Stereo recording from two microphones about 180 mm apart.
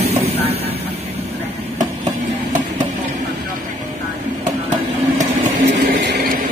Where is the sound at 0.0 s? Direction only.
35° right (ahead or behind).